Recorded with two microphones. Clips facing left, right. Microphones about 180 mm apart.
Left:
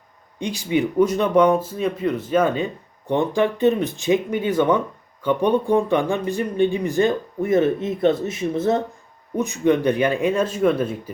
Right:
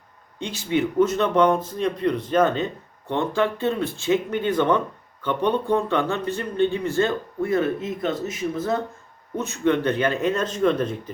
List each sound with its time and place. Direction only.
0.3 s speech: 15° left (ahead or behind)
9.3 s speech: 15° left (ahead or behind)